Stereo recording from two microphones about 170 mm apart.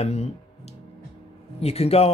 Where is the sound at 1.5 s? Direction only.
35° left (ahead or behind).